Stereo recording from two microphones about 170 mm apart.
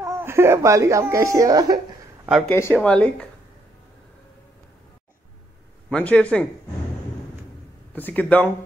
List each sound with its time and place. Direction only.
0.0 s speech: 15° right (ahead or behind)
2.5 s speech: 10° left (ahead or behind)
5.9 s speech: 5° left (ahead or behind)
7.9 s speech: 10° left (ahead or behind)